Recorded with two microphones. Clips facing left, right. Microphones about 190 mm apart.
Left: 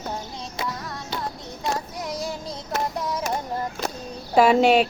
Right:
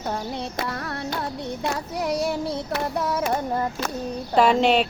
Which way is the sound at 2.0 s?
65° right (ahead or behind).